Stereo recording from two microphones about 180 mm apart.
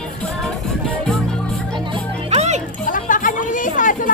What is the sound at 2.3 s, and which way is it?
Music, 40° right (ahead or behind).